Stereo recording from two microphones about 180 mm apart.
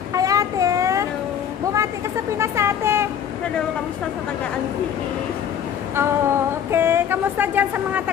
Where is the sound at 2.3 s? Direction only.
15° right (ahead or behind).